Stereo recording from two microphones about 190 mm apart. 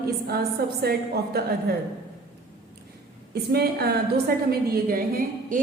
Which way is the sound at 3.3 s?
55° right (ahead or behind).